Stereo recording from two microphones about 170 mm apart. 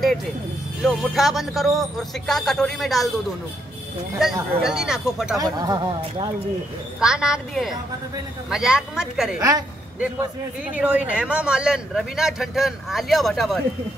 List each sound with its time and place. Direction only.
0.8 s speech: centre (ahead or behind)
4.2 s speech: 5° right (ahead or behind)
5.4 s speech: 25° right (ahead or behind)
7.0 s speech: 5° right (ahead or behind)
10.7 s speech: 10° right (ahead or behind)